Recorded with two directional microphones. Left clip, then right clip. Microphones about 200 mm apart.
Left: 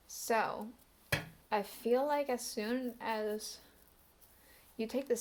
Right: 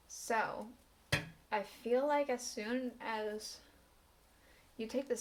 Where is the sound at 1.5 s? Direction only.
45° left (ahead or behind).